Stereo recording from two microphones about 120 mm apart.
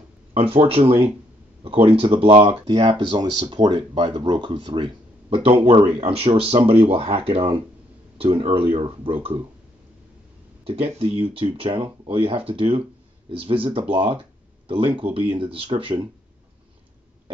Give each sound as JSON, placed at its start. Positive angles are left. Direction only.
{"t": 0.6, "sound": "speech", "side_deg": -55}
{"t": 3.2, "sound": "speech", "side_deg": -40}
{"t": 5.3, "sound": "speech", "side_deg": -55}
{"t": 10.6, "sound": "speech", "side_deg": -55}